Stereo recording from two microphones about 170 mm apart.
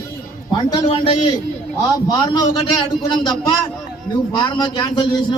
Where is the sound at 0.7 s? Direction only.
25° left (ahead or behind).